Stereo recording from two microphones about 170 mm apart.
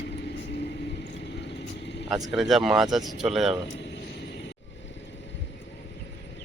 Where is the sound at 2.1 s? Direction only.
Centre (ahead or behind).